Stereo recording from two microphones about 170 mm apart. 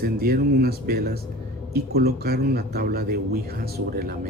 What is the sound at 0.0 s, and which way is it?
Speech, 65° right (ahead or behind).